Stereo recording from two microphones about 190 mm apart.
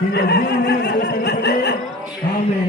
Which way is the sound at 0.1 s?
60° left (ahead or behind).